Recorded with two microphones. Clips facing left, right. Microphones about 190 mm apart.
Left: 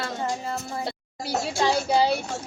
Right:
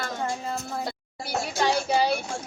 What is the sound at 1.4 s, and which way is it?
Speech, 25° left (ahead or behind).